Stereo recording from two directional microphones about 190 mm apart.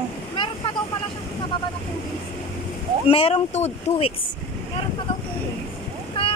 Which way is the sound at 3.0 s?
30° left (ahead or behind).